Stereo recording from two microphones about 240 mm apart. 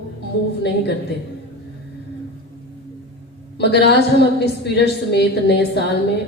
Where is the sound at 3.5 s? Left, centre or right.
Left.